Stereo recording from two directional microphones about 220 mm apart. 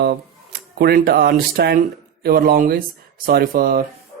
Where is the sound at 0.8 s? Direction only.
45° right (ahead or behind).